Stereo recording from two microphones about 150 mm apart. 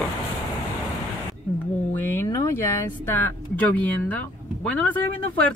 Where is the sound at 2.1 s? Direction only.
20° left (ahead or behind).